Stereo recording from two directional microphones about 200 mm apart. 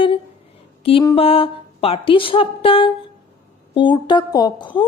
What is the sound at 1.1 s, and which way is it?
Speech, 30° left (ahead or behind).